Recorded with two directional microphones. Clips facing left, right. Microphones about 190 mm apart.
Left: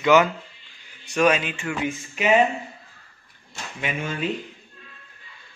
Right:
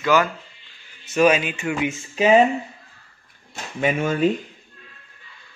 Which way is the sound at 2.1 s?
35° right (ahead or behind).